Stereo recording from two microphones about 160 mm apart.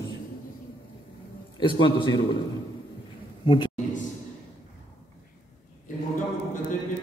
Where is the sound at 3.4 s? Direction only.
30° left (ahead or behind).